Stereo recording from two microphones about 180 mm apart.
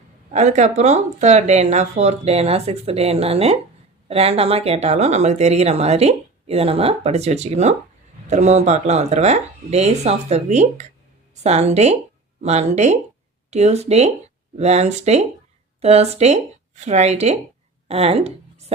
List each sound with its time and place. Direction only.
0.3 s speech: 40° right (ahead or behind)